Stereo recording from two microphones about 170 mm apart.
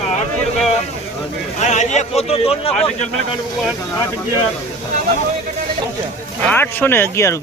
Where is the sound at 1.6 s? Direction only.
45° left (ahead or behind).